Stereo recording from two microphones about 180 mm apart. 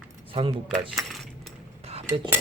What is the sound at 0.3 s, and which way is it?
Speech, 30° right (ahead or behind).